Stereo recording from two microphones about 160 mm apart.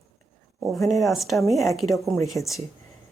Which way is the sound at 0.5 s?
Centre (ahead or behind).